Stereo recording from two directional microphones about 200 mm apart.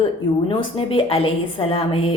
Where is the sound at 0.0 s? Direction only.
25° left (ahead or behind).